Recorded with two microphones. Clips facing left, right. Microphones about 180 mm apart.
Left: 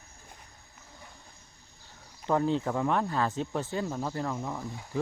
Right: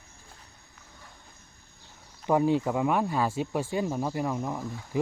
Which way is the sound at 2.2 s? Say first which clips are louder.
Right 3 dB; 15° right (ahead or behind).